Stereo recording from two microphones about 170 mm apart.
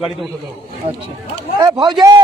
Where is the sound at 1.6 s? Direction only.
25° right (ahead or behind).